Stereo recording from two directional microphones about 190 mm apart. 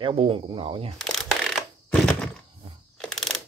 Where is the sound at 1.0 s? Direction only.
Centre (ahead or behind).